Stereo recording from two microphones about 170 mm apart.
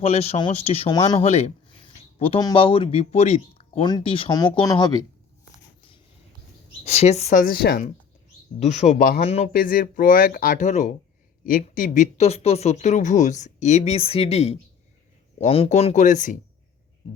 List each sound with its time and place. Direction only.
0.0 s speech: 35° left (ahead or behind)
0.9 s speech: 20° left (ahead or behind)
1.2 s speech: 40° left (ahead or behind)
2.0 s a sound: 35° left (ahead or behind)
2.4 s speech: 30° left (ahead or behind)
6.8 s speech: 40° left (ahead or behind); by 7.8 s 65° left (ahead or behind)
8.5 s speech: 40° left (ahead or behind)
9.2 s speech: 40° left (ahead or behind)
9.5 s speech: 55° left (ahead or behind)